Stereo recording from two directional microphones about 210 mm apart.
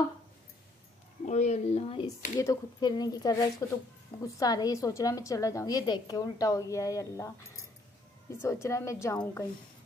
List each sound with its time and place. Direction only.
1.2 s speech: 35° left (ahead or behind)
2.3 s a woman's voice: 15° left (ahead or behind)
8.6 s a woman's voice: 15° left (ahead or behind)